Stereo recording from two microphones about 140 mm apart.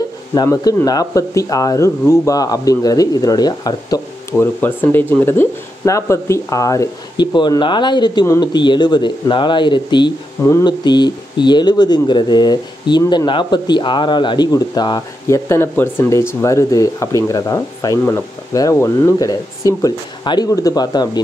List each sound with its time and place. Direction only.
0.5 s speech: 20° left (ahead or behind)